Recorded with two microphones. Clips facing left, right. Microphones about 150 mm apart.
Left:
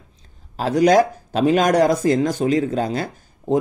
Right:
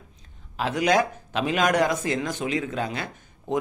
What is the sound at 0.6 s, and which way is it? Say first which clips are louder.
Speech: left 7 dB; 35° left (ahead or behind).